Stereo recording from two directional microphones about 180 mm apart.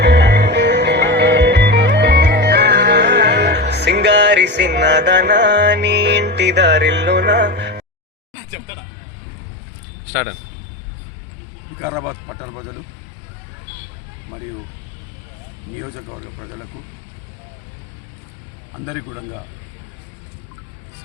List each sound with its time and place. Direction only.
0.0 s music: 70° right (ahead or behind)
10.1 s speech: 10° left (ahead or behind)
11.8 s a man's voice: 15° right (ahead or behind)